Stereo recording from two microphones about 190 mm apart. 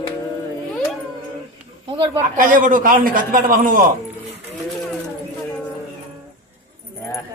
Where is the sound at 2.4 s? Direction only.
45° right (ahead or behind).